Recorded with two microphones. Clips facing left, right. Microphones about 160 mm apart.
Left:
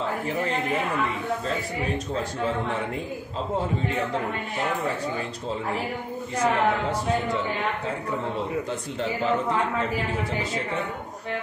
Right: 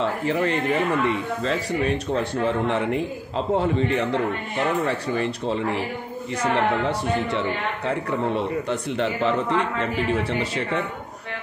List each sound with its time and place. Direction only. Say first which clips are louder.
0.0 s speech: right 4 dB; 75° right (ahead or behind)
2.1 s speech: right 3 dB; 70° right (ahead or behind)
4.8 s speech: right 4 dB; 75° right (ahead or behind)
8.6 s speech: right 4 dB; 75° right (ahead or behind)